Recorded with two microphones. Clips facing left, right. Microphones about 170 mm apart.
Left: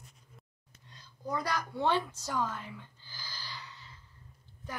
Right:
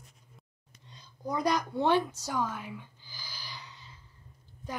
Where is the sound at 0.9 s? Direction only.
15° right (ahead or behind).